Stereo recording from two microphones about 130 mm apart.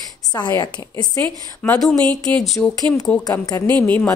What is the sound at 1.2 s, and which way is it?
Speech, 10° left (ahead or behind).